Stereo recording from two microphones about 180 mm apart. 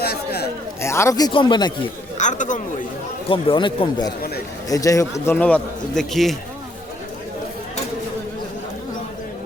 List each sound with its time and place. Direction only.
0.0 s a sound: 60° left (ahead or behind)
0.8 s speech: 15° left (ahead or behind)
2.1 s speech: 45° left (ahead or behind)
3.2 s a man's voice: 25° left (ahead or behind); by 6.3 s centre (ahead or behind)